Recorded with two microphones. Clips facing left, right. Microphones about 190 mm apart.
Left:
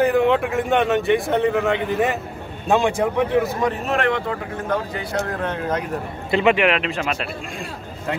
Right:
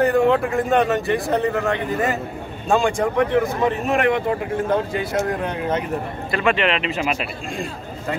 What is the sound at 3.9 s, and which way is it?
Speech, 20° right (ahead or behind).